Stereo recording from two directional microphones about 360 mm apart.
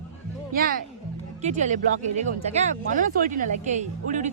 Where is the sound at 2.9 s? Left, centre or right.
Right.